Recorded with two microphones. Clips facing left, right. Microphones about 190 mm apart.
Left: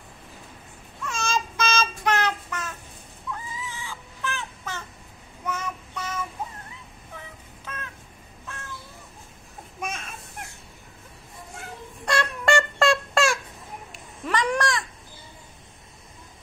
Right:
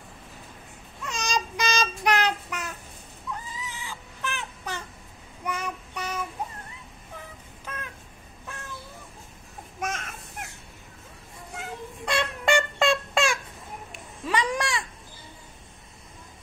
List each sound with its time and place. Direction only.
1.0 s child singing: 15° right (ahead or behind)
3.6 s chicken: 15° right (ahead or behind)
5.4 s child singing: 15° right (ahead or behind)
9.8 s a sound: 80° right
12.1 s a sound: 5° right (ahead or behind)
14.2 s babbling: 10° right (ahead or behind)